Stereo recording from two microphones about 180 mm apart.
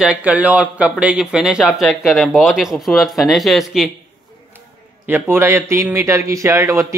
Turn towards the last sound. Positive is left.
turn(degrees=-15)  # may be behind; listen again after turning